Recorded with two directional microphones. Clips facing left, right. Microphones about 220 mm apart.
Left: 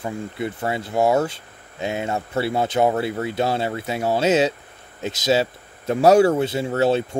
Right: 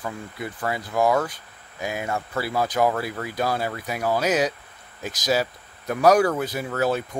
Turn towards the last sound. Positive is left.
turn(degrees=25)  # may be behind; listen again after turning